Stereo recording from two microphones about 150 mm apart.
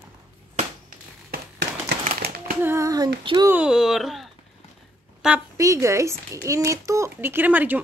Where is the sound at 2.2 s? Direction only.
90° right.